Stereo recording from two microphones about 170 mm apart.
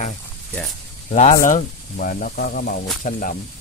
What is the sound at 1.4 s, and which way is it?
Speech, 50° left (ahead or behind).